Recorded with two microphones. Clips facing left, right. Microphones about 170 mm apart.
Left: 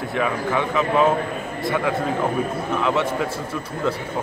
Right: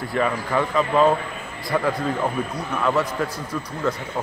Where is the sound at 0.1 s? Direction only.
Centre (ahead or behind).